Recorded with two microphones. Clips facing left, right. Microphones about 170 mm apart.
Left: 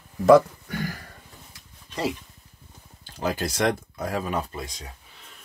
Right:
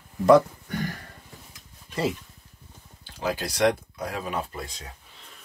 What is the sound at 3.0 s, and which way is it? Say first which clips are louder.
Speech: left 2 dB; 45° left (ahead or behind).